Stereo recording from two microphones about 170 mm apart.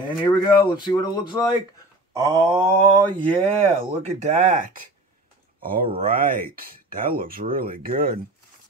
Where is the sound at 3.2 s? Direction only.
30° right (ahead or behind).